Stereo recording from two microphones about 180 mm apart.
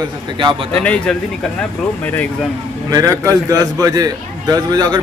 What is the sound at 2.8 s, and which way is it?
A man's voice, 20° right (ahead or behind).